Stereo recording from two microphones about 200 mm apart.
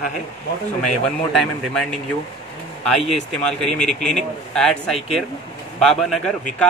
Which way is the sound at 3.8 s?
5° left (ahead or behind).